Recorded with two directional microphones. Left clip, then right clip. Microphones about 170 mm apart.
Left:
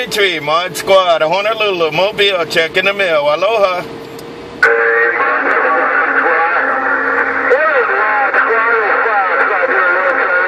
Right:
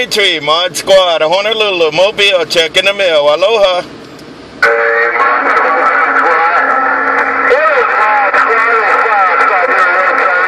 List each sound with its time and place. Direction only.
0.2 s speech: 40° right (ahead or behind)
4.6 s music: 45° right (ahead or behind)